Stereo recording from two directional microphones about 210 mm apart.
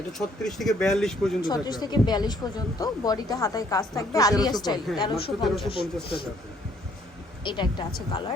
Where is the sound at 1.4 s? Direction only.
20° left (ahead or behind).